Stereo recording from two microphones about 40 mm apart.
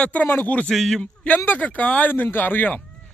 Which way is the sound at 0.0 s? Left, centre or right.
Left.